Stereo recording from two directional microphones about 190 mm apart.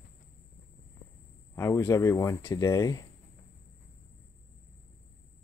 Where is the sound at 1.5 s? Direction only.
10° left (ahead or behind).